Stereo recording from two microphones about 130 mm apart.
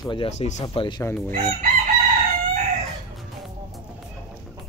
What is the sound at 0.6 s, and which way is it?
Speech, 40° left (ahead or behind).